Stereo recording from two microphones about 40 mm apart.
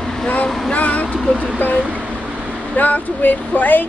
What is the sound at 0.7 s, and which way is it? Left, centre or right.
Music, left.